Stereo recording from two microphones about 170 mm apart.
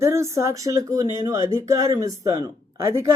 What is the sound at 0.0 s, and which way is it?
Speech, 15° right (ahead or behind).